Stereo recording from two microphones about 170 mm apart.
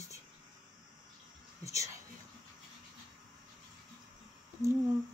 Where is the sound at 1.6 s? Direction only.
20° right (ahead or behind).